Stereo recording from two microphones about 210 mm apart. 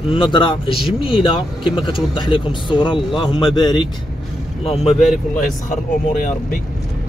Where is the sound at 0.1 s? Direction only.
25° left (ahead or behind).